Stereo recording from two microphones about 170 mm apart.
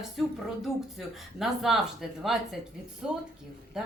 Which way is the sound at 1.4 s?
Centre (ahead or behind).